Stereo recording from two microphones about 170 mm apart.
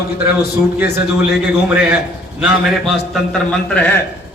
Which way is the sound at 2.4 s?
Centre (ahead or behind).